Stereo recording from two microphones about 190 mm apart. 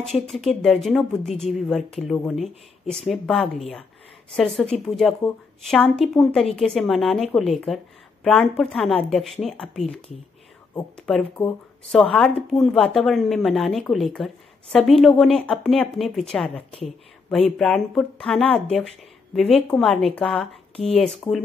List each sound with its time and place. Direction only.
0.6 s speech: 5° left (ahead or behind)
11.0 s speech: centre (ahead or behind)
17.6 s speech: 5° left (ahead or behind)
20.7 s speech: 30° left (ahead or behind)